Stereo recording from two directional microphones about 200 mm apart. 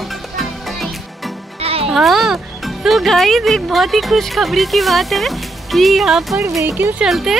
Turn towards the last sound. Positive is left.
turn(degrees=0)  # may be behind; listen again after turning